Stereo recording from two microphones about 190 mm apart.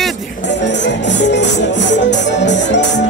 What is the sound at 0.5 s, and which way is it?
Music, 65° left (ahead or behind).